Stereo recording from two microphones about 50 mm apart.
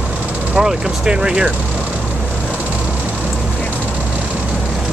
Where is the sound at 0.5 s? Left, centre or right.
Centre.